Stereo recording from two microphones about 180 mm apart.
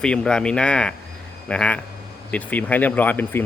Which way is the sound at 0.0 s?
5° left (ahead or behind).